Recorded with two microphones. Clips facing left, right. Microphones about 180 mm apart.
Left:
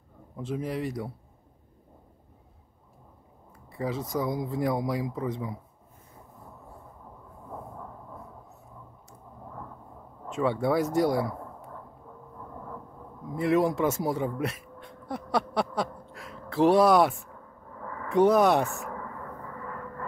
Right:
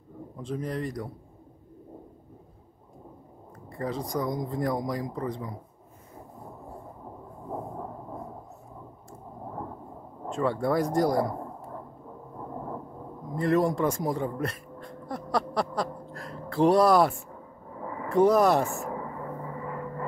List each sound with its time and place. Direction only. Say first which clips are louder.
0.4 s speech: left 1 dB; 5° left (ahead or behind)
3.7 s speech: even; centre (ahead or behind)
7.5 s a sound: right 6 dB; 30° right (ahead or behind)
9.5 s thunder: right 6 dB; 30° right (ahead or behind)
10.3 s speech: even; centre (ahead or behind)
12.4 s vehicle: right 6 dB; 30° right (ahead or behind)
13.4 s speech: even; centre (ahead or behind)
15.3 s a sound: even; centre (ahead or behind)
17.6 s a sound: right 3 dB; 15° right (ahead or behind)
18.0 s speech: even; centre (ahead or behind)
18.9 s vehicle: right 4 dB; 20° right (ahead or behind)